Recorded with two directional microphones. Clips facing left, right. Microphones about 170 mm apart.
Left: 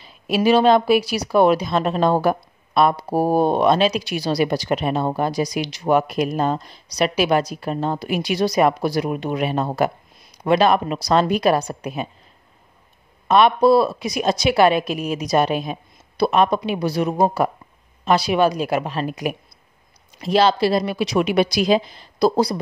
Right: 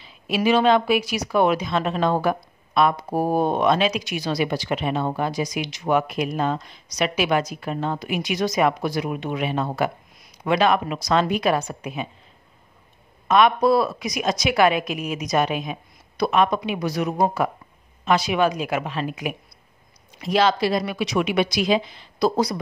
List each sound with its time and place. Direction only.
0.0 s a woman's voice: 40° left (ahead or behind)
13.3 s a woman's voice: 30° left (ahead or behind)